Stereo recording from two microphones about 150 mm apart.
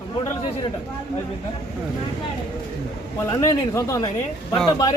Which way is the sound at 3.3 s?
20° left (ahead or behind).